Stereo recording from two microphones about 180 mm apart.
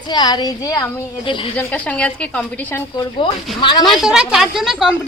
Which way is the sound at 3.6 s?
25° left (ahead or behind).